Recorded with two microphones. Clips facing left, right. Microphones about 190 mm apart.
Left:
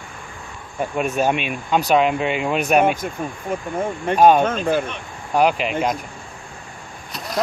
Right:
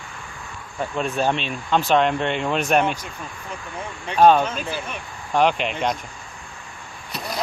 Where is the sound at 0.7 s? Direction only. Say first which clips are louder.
Left 3 dB; 15° left (ahead or behind).